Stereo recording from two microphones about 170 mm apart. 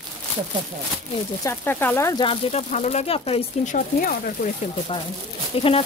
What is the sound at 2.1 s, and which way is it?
Speech, 30° left (ahead or behind).